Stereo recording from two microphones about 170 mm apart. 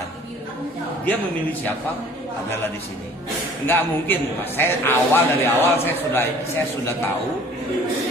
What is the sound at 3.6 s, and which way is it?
A man's voice, 10° left (ahead or behind).